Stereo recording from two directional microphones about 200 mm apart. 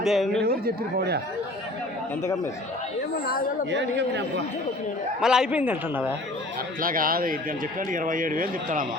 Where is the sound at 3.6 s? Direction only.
60° right (ahead or behind).